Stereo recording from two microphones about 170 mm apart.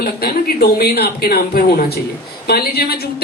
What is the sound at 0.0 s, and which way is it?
A man's voice, 60° left (ahead or behind).